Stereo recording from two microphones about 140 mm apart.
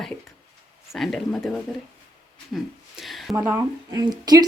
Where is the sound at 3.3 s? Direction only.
25° right (ahead or behind).